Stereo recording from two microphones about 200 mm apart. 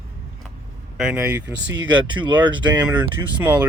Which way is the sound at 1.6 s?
70° right (ahead or behind).